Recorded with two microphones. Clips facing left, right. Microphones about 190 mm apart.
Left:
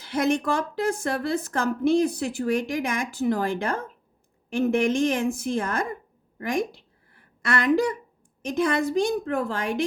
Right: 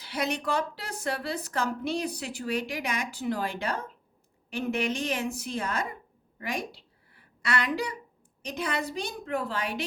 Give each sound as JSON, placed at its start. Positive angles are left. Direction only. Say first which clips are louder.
{"t": 0.0, "sound": "a woman's voice", "louder": "left 7 dB", "side_deg": 50}
{"t": 6.4, "sound": "a sound", "louder": "left 8 dB", "side_deg": 50}
{"t": 8.4, "sound": "a woman's voice", "louder": "left 8 dB", "side_deg": 50}